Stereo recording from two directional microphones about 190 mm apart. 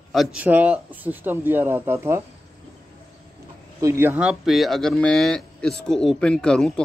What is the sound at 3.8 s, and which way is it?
Speech, 15° right (ahead or behind).